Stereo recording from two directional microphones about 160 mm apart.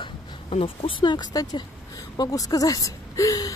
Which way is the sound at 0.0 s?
35° left (ahead or behind).